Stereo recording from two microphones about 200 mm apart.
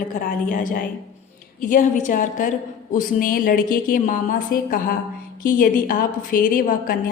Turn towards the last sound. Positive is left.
turn(degrees=45)  # may be behind; listen again after turning